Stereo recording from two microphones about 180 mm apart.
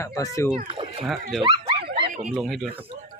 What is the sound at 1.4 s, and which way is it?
Dog, 25° right (ahead or behind).